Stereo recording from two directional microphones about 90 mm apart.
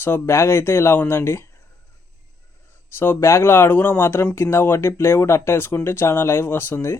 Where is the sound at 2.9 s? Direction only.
25° left (ahead or behind).